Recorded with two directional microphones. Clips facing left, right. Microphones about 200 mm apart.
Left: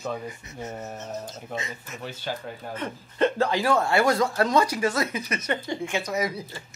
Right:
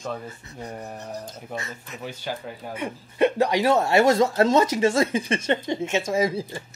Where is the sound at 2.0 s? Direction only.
10° right (ahead or behind); by 6.6 s 30° right (ahead or behind).